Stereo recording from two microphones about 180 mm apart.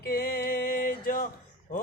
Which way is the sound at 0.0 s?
60° left (ahead or behind).